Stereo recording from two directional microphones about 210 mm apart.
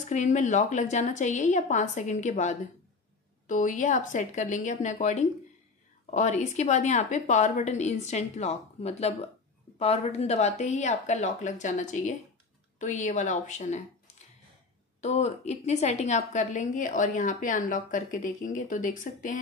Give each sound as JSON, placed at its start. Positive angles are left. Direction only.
{"t": 0.1, "sound": "a woman's voice", "side_deg": 35}